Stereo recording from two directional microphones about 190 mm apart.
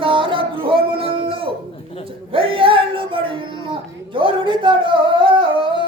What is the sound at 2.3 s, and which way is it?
Music, 30° right (ahead or behind).